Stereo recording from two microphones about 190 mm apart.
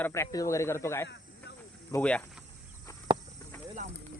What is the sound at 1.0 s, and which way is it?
Snake, 65° left (ahead or behind).